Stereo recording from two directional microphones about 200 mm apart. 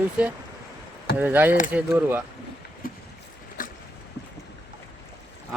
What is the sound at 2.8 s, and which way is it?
Boat, 45° left (ahead or behind).